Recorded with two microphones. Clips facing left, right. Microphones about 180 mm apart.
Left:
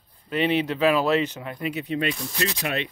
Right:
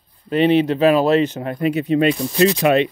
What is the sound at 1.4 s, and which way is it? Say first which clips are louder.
Speech: right 10 dB; 55° right (ahead or behind).